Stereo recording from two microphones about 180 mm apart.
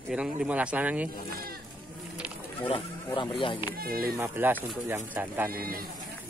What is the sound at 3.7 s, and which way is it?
Speech, 55° right (ahead or behind).